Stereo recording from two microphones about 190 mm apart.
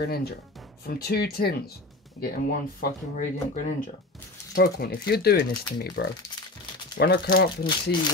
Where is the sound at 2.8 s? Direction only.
45° left (ahead or behind).